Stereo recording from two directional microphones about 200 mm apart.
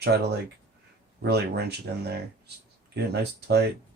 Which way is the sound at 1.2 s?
55° right (ahead or behind).